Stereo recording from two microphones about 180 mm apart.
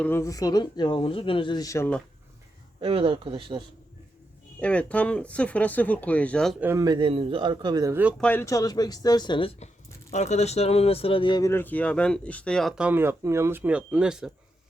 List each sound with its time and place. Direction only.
0.0 s speech: 15° left (ahead or behind)
2.8 s speech: 30° right (ahead or behind)
4.6 s speech: 5° left (ahead or behind)
6.6 s speech: 15° right (ahead or behind)
8.2 s speech: 10° left (ahead or behind)
10.1 s speech: 40° left (ahead or behind); by 14.3 s 5° right (ahead or behind)